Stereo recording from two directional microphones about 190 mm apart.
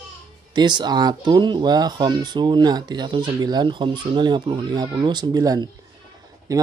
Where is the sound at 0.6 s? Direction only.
25° right (ahead or behind).